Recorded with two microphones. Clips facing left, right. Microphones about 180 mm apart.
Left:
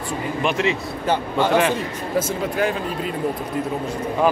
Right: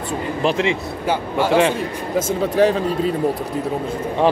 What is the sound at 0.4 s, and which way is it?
Speech, 30° right (ahead or behind).